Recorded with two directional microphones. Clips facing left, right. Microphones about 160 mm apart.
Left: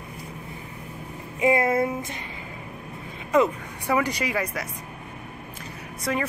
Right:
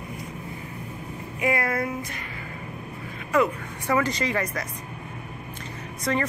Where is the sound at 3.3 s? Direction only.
15° left (ahead or behind).